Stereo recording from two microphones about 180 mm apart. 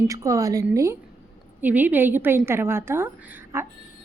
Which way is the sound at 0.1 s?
20° right (ahead or behind).